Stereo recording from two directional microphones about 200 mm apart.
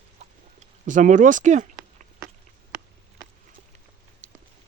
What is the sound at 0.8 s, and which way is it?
Speech, 40° right (ahead or behind).